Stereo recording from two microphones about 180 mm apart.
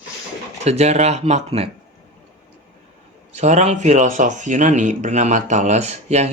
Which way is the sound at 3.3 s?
40° right (ahead or behind).